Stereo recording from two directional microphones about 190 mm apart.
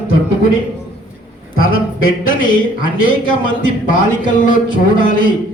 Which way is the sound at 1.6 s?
90° left.